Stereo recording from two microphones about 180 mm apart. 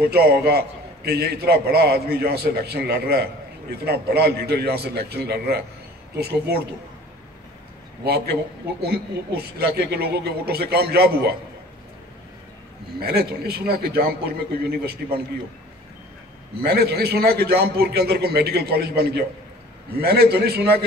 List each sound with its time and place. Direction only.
0.0 s a man's voice: 60° right (ahead or behind)
8.0 s a man's voice: 60° right (ahead or behind)
9.6 s a man's voice: 65° right (ahead or behind)
13.0 s a man's voice: 60° right (ahead or behind)
16.6 s a man's voice: 65° right (ahead or behind)